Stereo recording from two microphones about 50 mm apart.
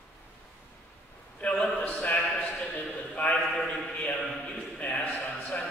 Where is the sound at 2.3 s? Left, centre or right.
Centre.